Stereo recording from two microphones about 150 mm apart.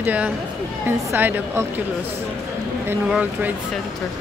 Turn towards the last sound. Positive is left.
turn(degrees=-10)  # may be behind; listen again after turning